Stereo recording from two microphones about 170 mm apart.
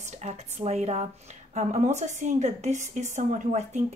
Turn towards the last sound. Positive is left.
turn(degrees=-45)  # may be behind; listen again after turning